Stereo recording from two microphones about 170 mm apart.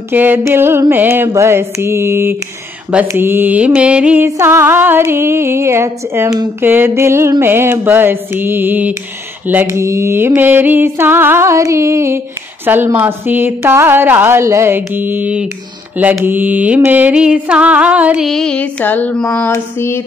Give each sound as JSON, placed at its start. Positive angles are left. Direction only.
{"t": 0.1, "sound": "mantra", "side_deg": -10}
{"t": 19.5, "sound": "speech", "side_deg": 15}